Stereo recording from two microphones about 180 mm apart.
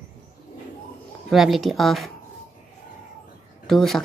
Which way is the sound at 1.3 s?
Centre (ahead or behind).